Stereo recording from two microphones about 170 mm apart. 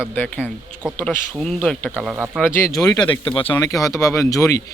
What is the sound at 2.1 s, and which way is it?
Speech, 5° right (ahead or behind).